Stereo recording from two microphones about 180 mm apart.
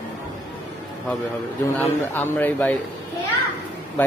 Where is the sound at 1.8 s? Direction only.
10° left (ahead or behind).